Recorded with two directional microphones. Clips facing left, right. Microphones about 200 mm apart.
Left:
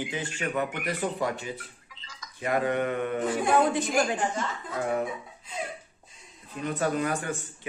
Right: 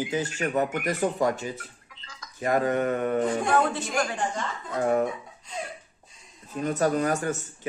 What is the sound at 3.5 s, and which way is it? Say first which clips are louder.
Speech: left 5 dB; 15° left (ahead or behind).